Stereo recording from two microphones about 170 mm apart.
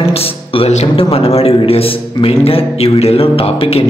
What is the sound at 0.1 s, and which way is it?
Speech, 35° left (ahead or behind).